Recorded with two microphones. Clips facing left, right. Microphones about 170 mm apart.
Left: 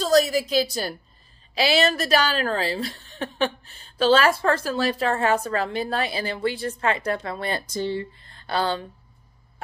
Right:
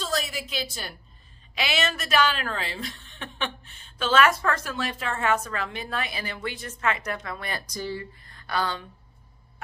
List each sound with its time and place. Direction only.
0.0 s a woman's voice: 40° left (ahead or behind)